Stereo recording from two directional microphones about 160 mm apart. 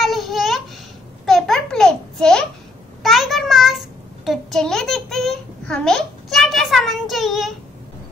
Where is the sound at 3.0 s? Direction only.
Centre (ahead or behind).